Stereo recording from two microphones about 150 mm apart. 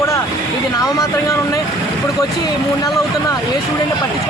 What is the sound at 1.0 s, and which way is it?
A man's voice, 20° left (ahead or behind).